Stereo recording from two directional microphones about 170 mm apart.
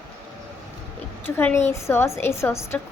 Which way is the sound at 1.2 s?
10° left (ahead or behind).